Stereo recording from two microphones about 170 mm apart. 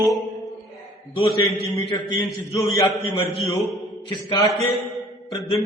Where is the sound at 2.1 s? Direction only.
25° left (ahead or behind).